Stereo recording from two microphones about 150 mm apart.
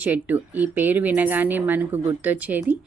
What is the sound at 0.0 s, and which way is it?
Speech, 10° right (ahead or behind).